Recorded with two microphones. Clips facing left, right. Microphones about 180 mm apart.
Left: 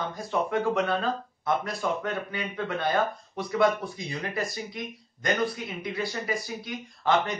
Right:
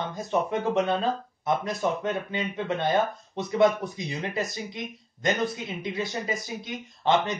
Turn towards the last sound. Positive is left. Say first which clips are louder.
# right 1 dB
turn(degrees=-20)  # may be behind; listen again after turning